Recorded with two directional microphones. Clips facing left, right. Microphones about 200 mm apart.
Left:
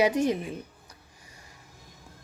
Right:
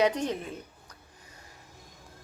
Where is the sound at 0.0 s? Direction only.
10° left (ahead or behind).